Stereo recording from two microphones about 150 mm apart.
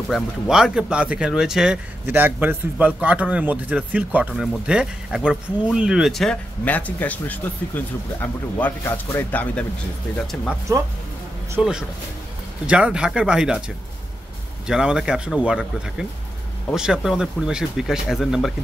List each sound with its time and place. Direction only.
0.1 s a man's voice: 5° right (ahead or behind)
10.7 s speech: 20° right (ahead or behind)
11.6 s a man's voice: 5° right (ahead or behind)
14.7 s a man's voice: 5° right (ahead or behind)